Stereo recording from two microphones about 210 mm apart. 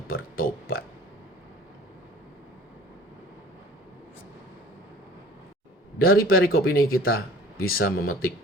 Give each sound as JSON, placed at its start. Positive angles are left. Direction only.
{"t": 0.3, "sound": "speech", "side_deg": 45}
{"t": 6.0, "sound": "speech", "side_deg": 45}